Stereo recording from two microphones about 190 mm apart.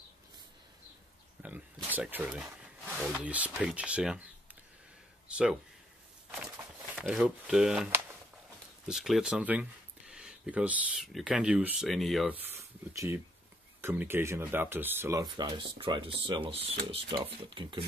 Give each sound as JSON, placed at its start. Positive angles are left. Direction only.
{"t": 1.4, "sound": "speech", "side_deg": -10}
{"t": 5.3, "sound": "speech", "side_deg": -5}
{"t": 7.1, "sound": "speech", "side_deg": -5}
{"t": 12.4, "sound": "speech", "side_deg": -15}